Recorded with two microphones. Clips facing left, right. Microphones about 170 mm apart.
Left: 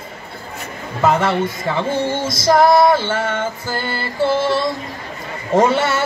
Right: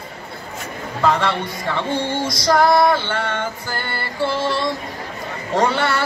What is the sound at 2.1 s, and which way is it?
Music, 25° left (ahead or behind).